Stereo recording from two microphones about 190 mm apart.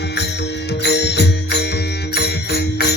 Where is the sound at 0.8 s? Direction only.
60° left (ahead or behind).